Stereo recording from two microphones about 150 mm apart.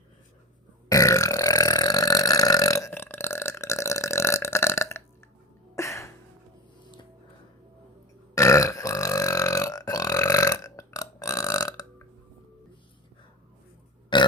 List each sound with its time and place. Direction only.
0.9 s burping: 20° left (ahead or behind)
5.7 s a sound: 20° left (ahead or behind)
8.4 s burping: 20° left (ahead or behind)
14.1 s burping: 30° left (ahead or behind)